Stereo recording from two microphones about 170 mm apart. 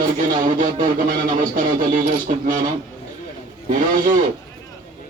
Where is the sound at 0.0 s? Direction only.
50° right (ahead or behind).